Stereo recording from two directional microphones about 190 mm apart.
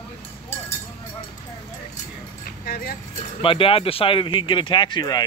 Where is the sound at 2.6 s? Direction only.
55° left (ahead or behind).